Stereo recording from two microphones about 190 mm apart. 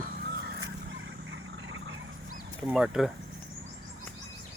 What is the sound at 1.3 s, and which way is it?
Vehicle, 90° right.